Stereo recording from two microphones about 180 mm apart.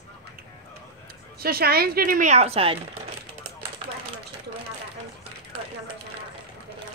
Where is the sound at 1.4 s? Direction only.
60° right (ahead or behind); by 2.8 s 30° right (ahead or behind).